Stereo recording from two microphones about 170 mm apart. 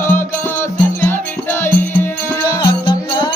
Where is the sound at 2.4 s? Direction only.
25° left (ahead or behind).